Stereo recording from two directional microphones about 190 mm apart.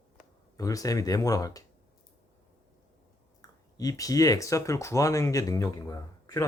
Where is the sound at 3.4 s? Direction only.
20° left (ahead or behind).